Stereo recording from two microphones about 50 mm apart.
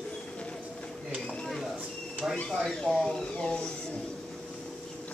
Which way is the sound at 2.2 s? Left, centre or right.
Centre.